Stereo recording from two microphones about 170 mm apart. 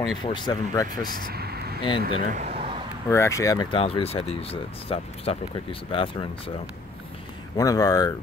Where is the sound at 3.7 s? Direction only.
35° left (ahead or behind).